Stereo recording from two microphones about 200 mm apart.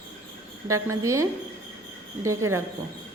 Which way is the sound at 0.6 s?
15° right (ahead or behind).